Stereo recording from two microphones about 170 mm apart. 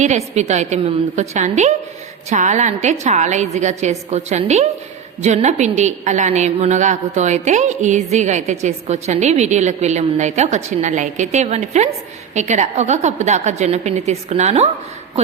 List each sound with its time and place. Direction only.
0.0 s a woman's voice: 40° right (ahead or behind)